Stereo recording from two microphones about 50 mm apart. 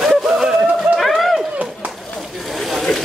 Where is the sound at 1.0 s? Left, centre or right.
Centre.